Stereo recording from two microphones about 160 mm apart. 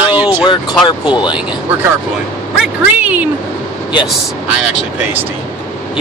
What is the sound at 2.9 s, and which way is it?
Speech, 10° right (ahead or behind).